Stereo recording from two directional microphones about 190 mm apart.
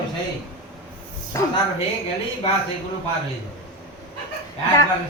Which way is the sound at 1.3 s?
15° left (ahead or behind).